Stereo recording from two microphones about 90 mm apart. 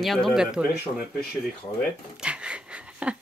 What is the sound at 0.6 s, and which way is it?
Speech, 20° right (ahead or behind).